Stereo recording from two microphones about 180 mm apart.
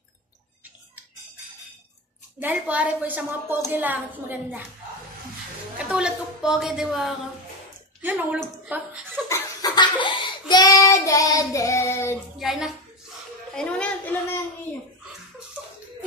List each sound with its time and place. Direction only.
2.4 s a woman's voice: 10° right (ahead or behind)
5.8 s a woman's voice: 5° right (ahead or behind)
9.3 s child singing: 25° left (ahead or behind)
12.4 s a woman's voice: centre (ahead or behind)
13.6 s a sound: 5° left (ahead or behind)